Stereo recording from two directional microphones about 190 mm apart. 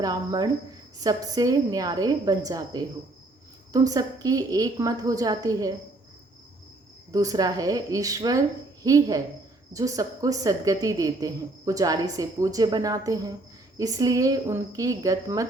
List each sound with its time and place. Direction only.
0.0 s a woman's voice: 20° right (ahead or behind)
7.1 s a woman's voice: 20° right (ahead or behind)